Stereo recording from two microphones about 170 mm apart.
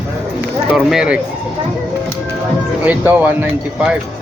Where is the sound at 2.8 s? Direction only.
10° right (ahead or behind).